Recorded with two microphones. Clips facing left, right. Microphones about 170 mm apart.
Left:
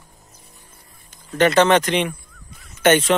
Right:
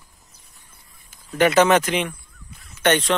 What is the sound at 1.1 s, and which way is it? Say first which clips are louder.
Speech: left 1 dB; 5° right (ahead or behind).